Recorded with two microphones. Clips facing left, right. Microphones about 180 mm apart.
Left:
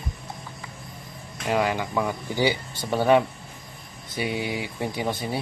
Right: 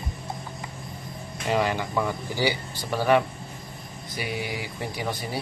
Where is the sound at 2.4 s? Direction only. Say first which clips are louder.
Left 3 dB; 20° left (ahead or behind).